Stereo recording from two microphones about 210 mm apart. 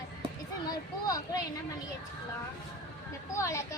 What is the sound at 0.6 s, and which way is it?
Speech, 20° left (ahead or behind).